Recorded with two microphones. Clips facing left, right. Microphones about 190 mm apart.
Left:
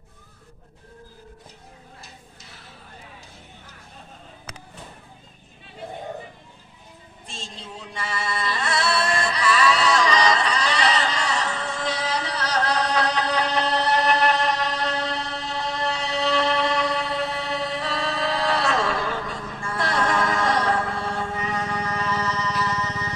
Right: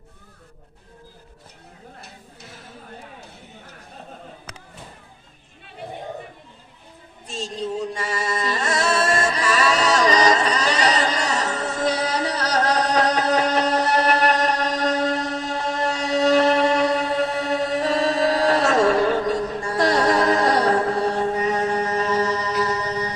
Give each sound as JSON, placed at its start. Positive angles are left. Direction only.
{"t": 7.2, "sound": "music", "side_deg": -40}